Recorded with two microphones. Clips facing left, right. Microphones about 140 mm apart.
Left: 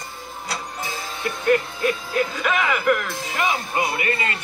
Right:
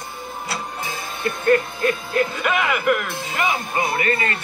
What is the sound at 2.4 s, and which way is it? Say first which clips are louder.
Speech: left 2 dB; 5° right (ahead or behind).